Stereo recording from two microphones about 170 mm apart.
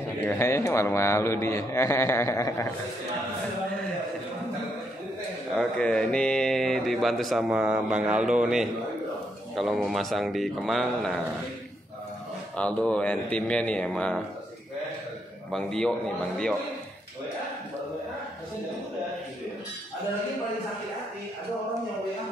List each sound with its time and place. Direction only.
0.2 s a man's voice: 15° left (ahead or behind)
5.5 s speech: 5° left (ahead or behind)
12.5 s a man's voice: 5° left (ahead or behind)
15.5 s speech: 5° left (ahead or behind)